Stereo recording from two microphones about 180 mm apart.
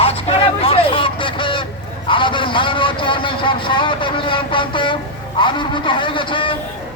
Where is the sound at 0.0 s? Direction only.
35° left (ahead or behind).